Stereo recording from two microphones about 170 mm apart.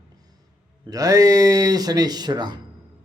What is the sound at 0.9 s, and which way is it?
A man's voice, 20° right (ahead or behind).